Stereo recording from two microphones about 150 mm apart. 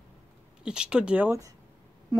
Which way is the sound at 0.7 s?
5° right (ahead or behind).